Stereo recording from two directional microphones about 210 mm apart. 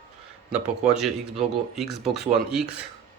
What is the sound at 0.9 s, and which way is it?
A man's voice, centre (ahead or behind).